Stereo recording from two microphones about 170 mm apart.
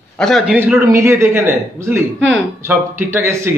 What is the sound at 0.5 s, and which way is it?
A woman's voice, 10° right (ahead or behind).